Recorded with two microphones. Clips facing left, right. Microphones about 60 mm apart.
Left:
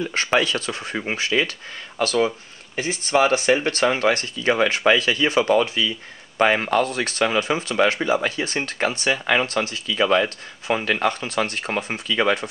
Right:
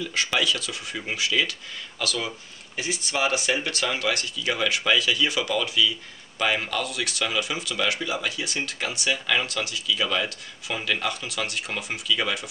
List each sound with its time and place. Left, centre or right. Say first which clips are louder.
0.0 s speech: left 5 dB; left